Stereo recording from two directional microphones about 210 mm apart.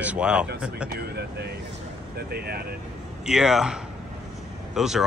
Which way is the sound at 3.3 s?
Centre (ahead or behind).